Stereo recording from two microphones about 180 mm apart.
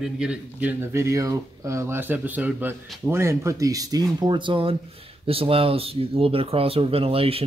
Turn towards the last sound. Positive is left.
turn(degrees=-30)  # may be behind; listen again after turning